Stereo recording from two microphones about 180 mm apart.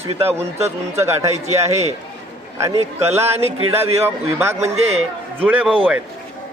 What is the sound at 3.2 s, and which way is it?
Speech, 35° right (ahead or behind).